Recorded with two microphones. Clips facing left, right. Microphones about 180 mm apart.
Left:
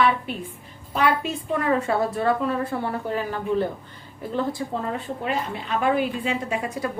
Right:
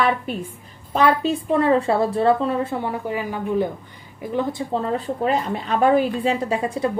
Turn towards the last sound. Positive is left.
turn(degrees=-30)  # may be behind; listen again after turning